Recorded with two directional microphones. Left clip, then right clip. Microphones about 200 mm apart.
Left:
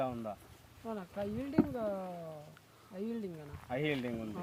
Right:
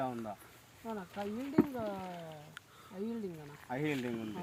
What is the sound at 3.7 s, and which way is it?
Speech, 35° left (ahead or behind).